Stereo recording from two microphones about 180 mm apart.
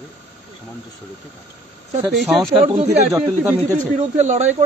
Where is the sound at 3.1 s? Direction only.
15° right (ahead or behind).